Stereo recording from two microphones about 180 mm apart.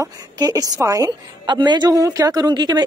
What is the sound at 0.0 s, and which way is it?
A woman's voice, 20° right (ahead or behind).